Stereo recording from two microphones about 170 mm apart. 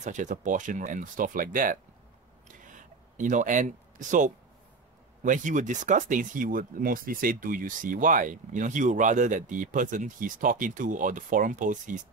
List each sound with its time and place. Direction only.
0.0 s speech: 45° right (ahead or behind)
2.4 s a sound: 50° right (ahead or behind)
5.2 s speech: 50° right (ahead or behind)